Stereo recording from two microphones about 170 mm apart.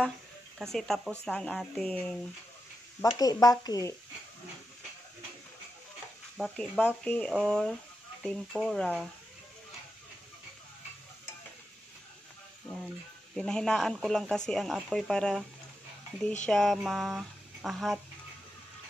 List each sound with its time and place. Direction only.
0.6 s speech: centre (ahead or behind)
3.0 s speech: 20° left (ahead or behind)
6.3 s speech: centre (ahead or behind)
12.7 s speech: centre (ahead or behind)
16.4 s speech: 5° left (ahead or behind)
16.7 s music: centre (ahead or behind)